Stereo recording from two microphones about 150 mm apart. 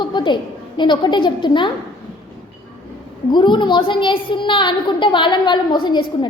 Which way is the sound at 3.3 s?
30° left (ahead or behind).